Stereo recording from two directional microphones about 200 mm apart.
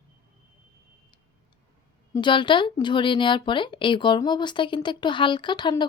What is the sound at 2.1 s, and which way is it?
Speech, 25° left (ahead or behind).